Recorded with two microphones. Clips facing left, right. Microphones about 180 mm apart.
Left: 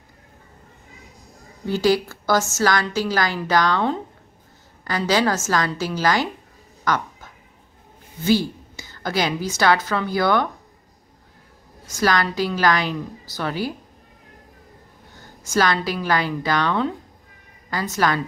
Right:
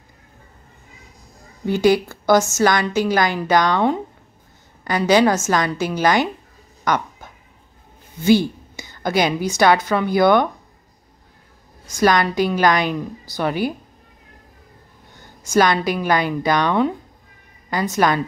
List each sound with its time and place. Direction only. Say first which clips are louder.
1.7 s a woman's voice: right 3 dB; 20° right (ahead or behind)
6.8 s a sound: right 2 dB; 20° right (ahead or behind)
8.3 s a woman's voice: right 4 dB; 20° right (ahead or behind)
12.0 s a woman's voice: right 4 dB; 20° right (ahead or behind)
15.4 s a woman's voice: right 4 dB; 20° right (ahead or behind)